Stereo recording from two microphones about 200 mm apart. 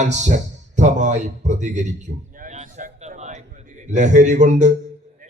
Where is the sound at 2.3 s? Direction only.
40° right (ahead or behind).